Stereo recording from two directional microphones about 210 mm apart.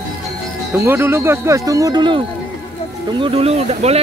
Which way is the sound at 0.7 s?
10° right (ahead or behind).